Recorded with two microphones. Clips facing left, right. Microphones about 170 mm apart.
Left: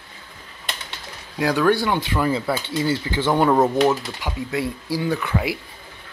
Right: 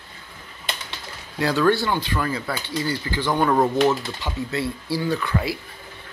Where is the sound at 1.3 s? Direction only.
10° left (ahead or behind).